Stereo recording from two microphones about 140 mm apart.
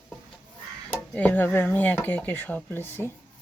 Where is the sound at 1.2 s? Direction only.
10° left (ahead or behind).